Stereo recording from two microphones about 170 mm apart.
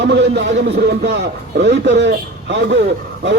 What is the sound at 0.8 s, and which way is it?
A man's voice, 70° right (ahead or behind).